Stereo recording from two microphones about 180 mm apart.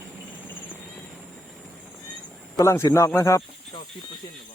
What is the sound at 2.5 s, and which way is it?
Speech, 15° left (ahead or behind).